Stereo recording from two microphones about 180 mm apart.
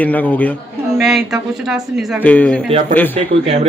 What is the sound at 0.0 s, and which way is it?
Speech, 10° left (ahead or behind).